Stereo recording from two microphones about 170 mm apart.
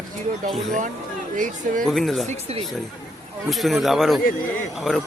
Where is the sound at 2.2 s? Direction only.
35° right (ahead or behind).